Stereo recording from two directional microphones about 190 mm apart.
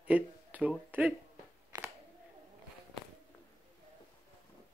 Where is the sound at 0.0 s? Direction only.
5° right (ahead or behind).